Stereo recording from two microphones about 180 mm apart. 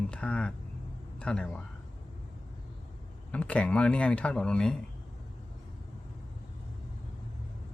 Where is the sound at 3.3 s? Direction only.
5° left (ahead or behind).